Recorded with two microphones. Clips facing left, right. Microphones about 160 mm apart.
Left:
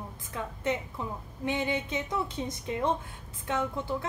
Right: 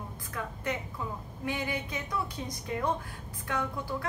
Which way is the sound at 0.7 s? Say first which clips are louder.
Left 4 dB; 25° left (ahead or behind).